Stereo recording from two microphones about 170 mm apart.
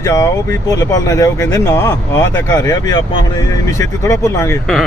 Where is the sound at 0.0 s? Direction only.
20° left (ahead or behind).